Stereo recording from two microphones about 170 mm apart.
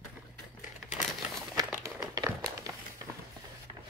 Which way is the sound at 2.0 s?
20° right (ahead or behind).